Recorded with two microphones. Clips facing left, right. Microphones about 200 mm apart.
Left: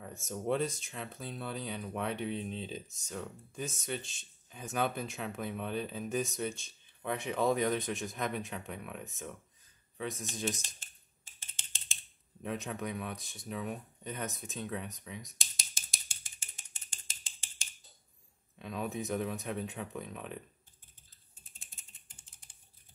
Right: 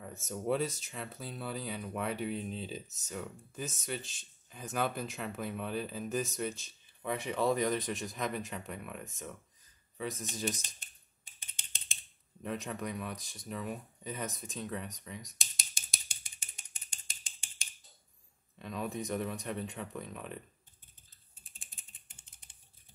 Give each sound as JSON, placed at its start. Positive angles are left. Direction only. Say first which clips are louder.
{"t": 0.0, "sound": "speech", "louder": "even", "side_deg": 0}
{"t": 10.8, "sound": "typing", "louder": "even", "side_deg": -15}
{"t": 12.4, "sound": "speech", "louder": "even", "side_deg": 0}
{"t": 16.9, "sound": "a sound", "louder": "left 1 dB", "side_deg": -15}
{"t": 18.6, "sound": "speech", "louder": "even", "side_deg": 0}